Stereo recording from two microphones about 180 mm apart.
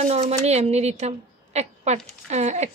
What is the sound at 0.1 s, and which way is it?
A woman's voice, 35° right (ahead or behind).